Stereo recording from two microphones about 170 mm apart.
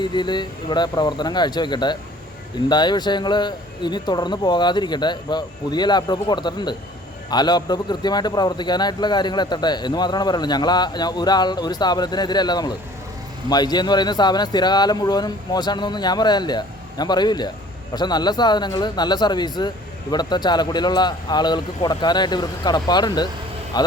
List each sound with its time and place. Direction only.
0.0 s a man's voice: 25° left (ahead or behind)